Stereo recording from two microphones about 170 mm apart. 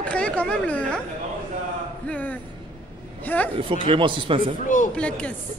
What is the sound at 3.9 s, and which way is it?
Speech, 30° right (ahead or behind).